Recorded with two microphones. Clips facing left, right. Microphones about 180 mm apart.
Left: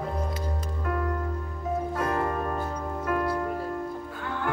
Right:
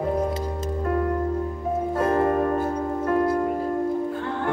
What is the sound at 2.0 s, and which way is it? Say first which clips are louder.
Music: right 10 dB; 30° right (ahead or behind).